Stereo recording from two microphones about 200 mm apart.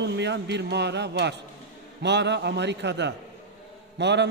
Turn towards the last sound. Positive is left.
turn(degrees=-60)  # may be behind; listen again after turning